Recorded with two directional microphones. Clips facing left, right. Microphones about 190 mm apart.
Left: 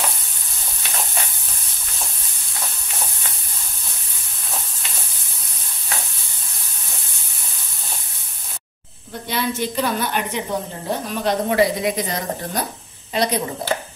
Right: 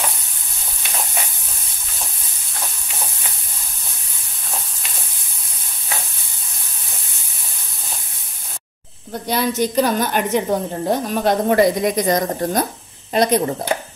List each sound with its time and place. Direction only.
9.3 s a woman's voice: 40° right (ahead or behind)